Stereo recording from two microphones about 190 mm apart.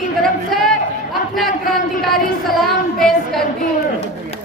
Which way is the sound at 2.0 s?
Centre (ahead or behind).